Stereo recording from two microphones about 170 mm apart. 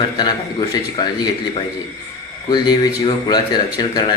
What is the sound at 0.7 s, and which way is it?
Speech, 25° left (ahead or behind).